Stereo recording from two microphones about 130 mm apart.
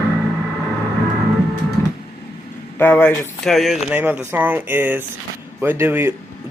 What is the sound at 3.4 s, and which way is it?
Speech, centre (ahead or behind).